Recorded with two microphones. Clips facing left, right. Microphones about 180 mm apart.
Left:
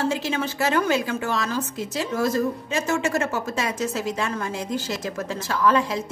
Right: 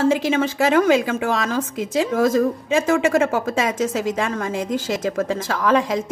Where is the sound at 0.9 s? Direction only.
55° right (ahead or behind).